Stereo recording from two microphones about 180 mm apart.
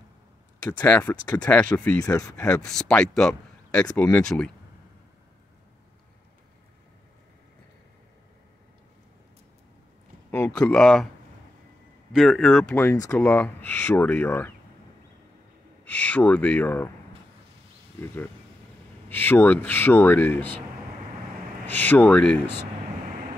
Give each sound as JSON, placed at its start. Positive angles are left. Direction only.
{"t": 0.7, "sound": "speech", "side_deg": 10}
{"t": 2.0, "sound": "speech", "side_deg": 20}
{"t": 2.4, "sound": "speech", "side_deg": 5}
{"t": 10.3, "sound": "speech", "side_deg": 10}
{"t": 12.1, "sound": "speech", "side_deg": 0}
{"t": 15.9, "sound": "speech", "side_deg": 10}
{"t": 19.0, "sound": "speech", "side_deg": 10}
{"t": 21.6, "sound": "speech", "side_deg": 10}